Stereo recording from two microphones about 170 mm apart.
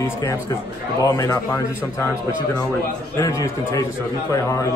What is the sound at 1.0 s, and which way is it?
A man's voice, 20° left (ahead or behind).